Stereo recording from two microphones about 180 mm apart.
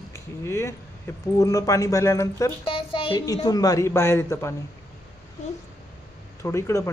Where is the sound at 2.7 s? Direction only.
30° left (ahead or behind).